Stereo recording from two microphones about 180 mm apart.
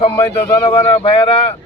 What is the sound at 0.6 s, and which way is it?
Speech, 30° left (ahead or behind).